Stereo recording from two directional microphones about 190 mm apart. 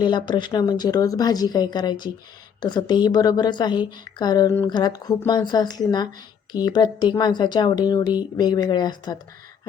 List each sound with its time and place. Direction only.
0.0 s a woman's voice: 25° left (ahead or behind)